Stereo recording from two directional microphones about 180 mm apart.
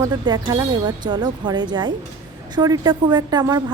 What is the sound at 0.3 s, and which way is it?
A woman's voice, 25° right (ahead or behind).